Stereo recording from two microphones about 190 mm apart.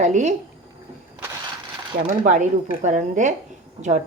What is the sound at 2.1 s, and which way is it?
A woman's voice, 40° right (ahead or behind).